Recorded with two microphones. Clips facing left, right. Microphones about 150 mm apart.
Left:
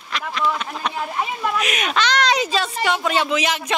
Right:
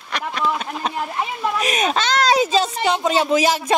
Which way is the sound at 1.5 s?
35° right (ahead or behind).